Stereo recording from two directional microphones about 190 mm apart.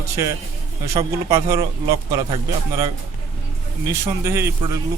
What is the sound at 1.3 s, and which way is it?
Speech, 15° right (ahead or behind).